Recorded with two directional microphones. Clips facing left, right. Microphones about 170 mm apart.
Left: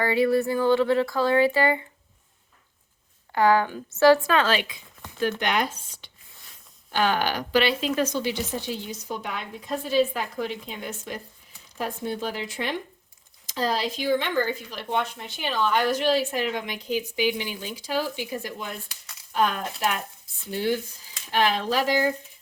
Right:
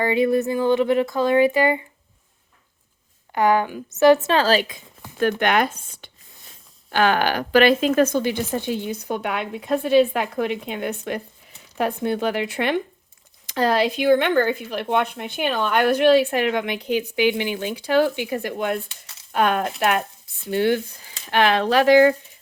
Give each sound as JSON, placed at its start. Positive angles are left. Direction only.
{"t": 0.0, "sound": "speech", "side_deg": -20}
{"t": 3.3, "sound": "speech", "side_deg": -20}
{"t": 5.4, "sound": "speech", "side_deg": -55}